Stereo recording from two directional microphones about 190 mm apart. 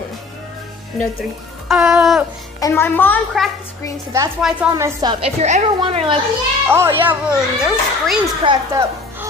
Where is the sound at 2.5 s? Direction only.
15° left (ahead or behind).